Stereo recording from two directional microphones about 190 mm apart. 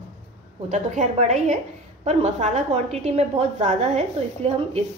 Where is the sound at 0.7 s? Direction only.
40° right (ahead or behind).